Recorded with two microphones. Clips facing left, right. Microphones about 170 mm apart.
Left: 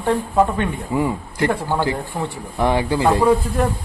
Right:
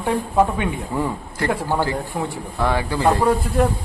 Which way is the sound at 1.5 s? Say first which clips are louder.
Right 3 dB; 10° right (ahead or behind).